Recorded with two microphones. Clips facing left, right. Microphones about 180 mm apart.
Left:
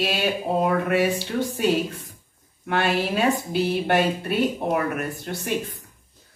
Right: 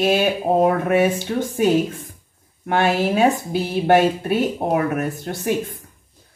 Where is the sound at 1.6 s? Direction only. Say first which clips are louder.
Right 7 dB; 50° right (ahead or behind).